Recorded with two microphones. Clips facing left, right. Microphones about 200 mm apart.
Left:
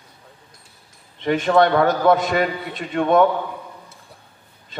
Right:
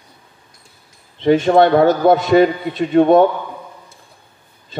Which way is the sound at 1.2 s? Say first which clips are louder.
Right 5 dB; 30° right (ahead or behind).